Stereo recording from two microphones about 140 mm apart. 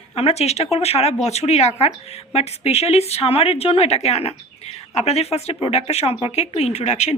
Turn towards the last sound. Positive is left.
turn(degrees=55)  # may be behind; listen again after turning